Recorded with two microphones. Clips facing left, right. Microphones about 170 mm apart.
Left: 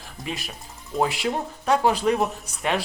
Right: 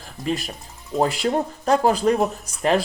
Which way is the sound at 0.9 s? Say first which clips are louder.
Right 4 dB; 40° right (ahead or behind).